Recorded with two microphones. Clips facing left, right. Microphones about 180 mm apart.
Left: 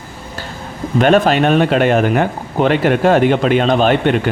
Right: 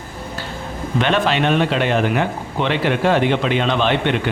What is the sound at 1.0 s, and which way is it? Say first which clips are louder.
Speech: left 6 dB; 45° left (ahead or behind).